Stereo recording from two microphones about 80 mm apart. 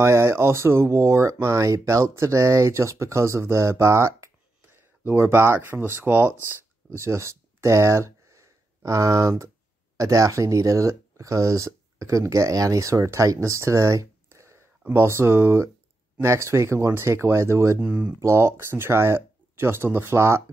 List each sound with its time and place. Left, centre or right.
0.0 s speech: right
4.6 s speech: right
6.5 s a sound: right
9.9 s speech: right
17.7 s speech: centre
18.2 s speech: right